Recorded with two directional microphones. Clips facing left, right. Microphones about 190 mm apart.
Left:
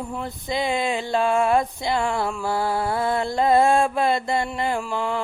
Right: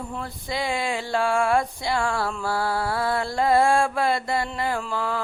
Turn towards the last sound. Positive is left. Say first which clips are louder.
# left 2 dB
turn(degrees=25)  # may be behind; listen again after turning